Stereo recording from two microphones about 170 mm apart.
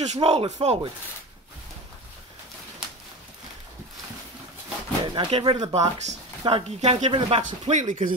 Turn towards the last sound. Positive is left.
turn(degrees=-45)  # may be behind; listen again after turning